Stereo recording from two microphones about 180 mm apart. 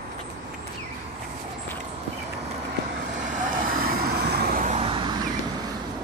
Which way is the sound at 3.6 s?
55° right (ahead or behind).